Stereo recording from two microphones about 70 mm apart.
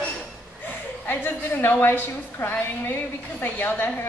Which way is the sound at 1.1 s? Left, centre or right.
Left.